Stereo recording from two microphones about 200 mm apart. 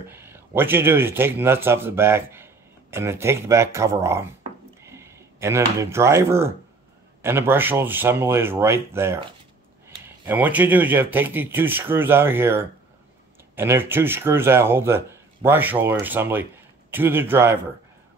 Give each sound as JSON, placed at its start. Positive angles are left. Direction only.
{"t": 0.0, "sound": "speech", "side_deg": -10}